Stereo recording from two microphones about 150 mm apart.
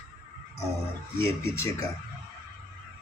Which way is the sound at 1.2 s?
20° left (ahead or behind).